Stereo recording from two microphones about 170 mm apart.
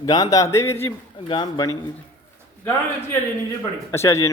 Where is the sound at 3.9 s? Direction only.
15° left (ahead or behind).